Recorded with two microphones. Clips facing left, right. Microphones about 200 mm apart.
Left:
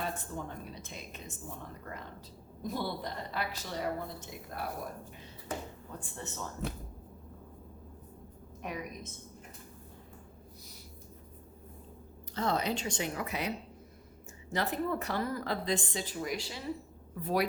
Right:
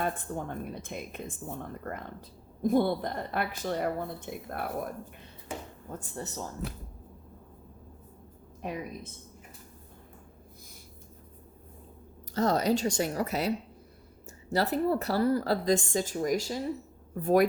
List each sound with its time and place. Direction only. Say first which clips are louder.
0.0 s a woman's voice: right 5 dB; 50° right (ahead or behind)
5.9 s a woman's voice: right 8 dB; 40° right (ahead or behind)
8.6 s a woman's voice: right 4 dB; 30° right (ahead or behind)
12.3 s a woman's voice: right 6 dB; 40° right (ahead or behind)
14.5 s a woman's voice: right 6 dB; 35° right (ahead or behind)